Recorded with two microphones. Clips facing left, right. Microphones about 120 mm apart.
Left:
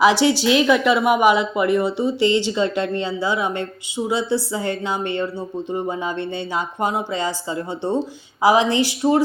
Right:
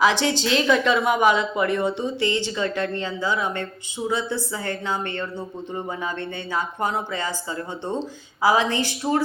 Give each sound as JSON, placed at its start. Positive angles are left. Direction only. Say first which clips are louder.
{"t": 0.0, "sound": "speech", "louder": "left 5 dB", "side_deg": 15}
{"t": 6.8, "sound": "speech", "louder": "left 6 dB", "side_deg": 15}